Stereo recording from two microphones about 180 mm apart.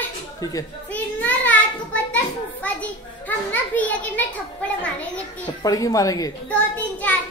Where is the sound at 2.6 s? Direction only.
10° left (ahead or behind).